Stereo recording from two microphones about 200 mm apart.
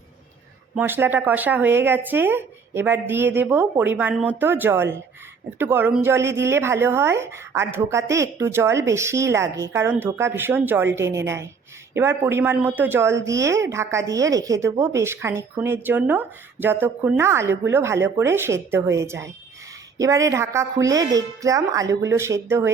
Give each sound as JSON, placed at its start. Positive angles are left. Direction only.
{"t": 0.8, "sound": "speech", "side_deg": -10}